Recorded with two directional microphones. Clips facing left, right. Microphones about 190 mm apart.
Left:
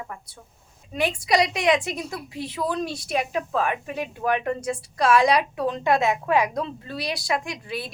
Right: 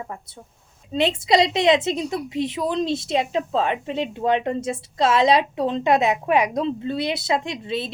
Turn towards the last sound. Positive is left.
turn(degrees=-25)  # may be behind; listen again after turning